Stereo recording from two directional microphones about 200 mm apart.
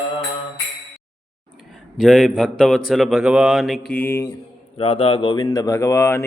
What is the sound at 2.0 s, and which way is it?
Speech, centre (ahead or behind).